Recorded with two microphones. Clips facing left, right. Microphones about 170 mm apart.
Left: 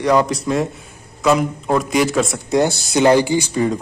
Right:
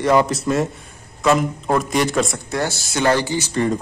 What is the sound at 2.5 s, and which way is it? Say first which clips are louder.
Speech: left 7 dB; 15° left (ahead or behind).